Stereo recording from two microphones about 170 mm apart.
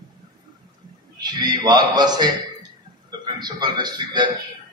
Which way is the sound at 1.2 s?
25° right (ahead or behind).